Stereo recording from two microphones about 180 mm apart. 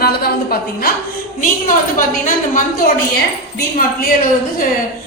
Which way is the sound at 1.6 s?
45° left (ahead or behind).